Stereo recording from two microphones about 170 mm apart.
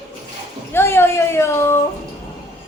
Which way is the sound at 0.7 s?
15° left (ahead or behind).